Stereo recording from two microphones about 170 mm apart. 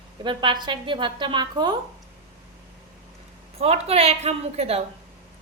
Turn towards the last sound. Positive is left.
turn(degrees=-35)  # may be behind; listen again after turning